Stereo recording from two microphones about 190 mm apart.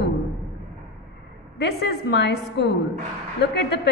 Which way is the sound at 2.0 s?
60° left (ahead or behind).